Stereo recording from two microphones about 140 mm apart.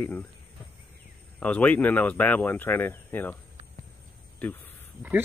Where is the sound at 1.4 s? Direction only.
10° left (ahead or behind).